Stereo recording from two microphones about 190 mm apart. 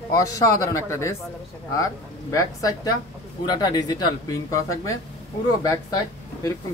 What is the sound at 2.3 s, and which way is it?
Speech, 20° left (ahead or behind).